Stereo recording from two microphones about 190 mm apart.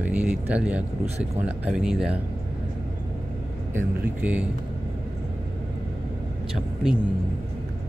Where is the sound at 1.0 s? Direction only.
35° right (ahead or behind).